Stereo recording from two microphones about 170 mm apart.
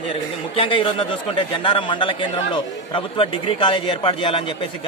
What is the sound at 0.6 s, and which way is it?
A man's voice, 30° left (ahead or behind).